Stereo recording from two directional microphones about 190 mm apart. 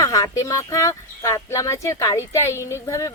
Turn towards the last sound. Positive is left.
turn(degrees=15)  # may be behind; listen again after turning